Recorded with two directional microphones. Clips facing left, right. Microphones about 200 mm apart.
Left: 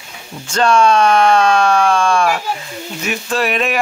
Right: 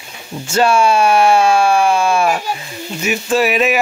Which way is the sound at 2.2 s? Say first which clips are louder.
Right 1 dB; 15° right (ahead or behind).